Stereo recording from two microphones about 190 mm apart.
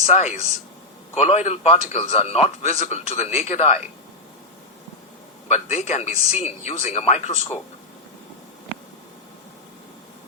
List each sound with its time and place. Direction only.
0.0 s a man's voice: 35° left (ahead or behind)
5.5 s a man's voice: 35° left (ahead or behind)